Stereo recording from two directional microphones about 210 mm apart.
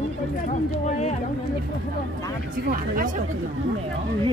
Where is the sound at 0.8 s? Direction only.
35° left (ahead or behind).